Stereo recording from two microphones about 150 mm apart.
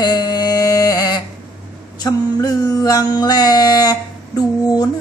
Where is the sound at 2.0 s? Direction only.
25° left (ahead or behind).